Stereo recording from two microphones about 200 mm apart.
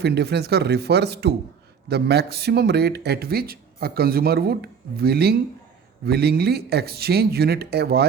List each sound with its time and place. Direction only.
0.0 s speech: 55° right (ahead or behind)